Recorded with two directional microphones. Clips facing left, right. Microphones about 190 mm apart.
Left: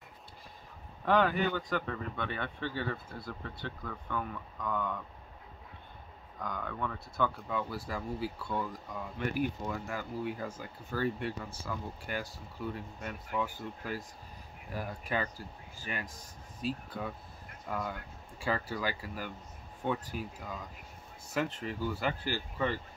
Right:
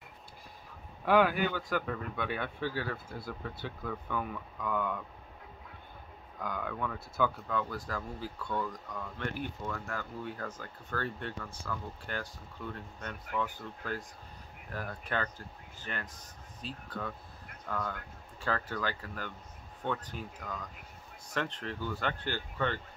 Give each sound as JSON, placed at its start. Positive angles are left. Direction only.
{"t": 1.0, "sound": "speech", "side_deg": -10}
{"t": 6.4, "sound": "speech", "side_deg": -5}